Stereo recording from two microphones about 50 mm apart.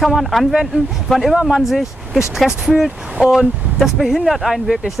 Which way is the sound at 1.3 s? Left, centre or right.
Centre.